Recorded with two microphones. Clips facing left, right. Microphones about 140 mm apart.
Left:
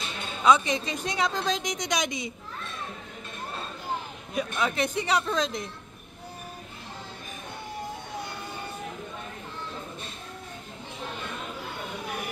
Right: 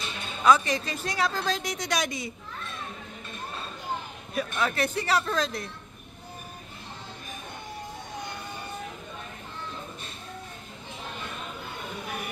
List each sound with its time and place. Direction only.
0.4 s a woman's voice: 20° left (ahead or behind)
4.4 s a woman's voice: 15° left (ahead or behind)